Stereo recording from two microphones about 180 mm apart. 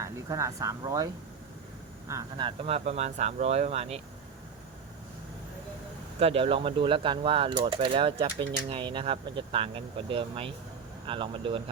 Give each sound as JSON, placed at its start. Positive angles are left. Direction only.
{"t": 0.0, "sound": "speech", "side_deg": -15}
{"t": 2.6, "sound": "speech", "side_deg": -35}
{"t": 6.1, "sound": "speech", "side_deg": -35}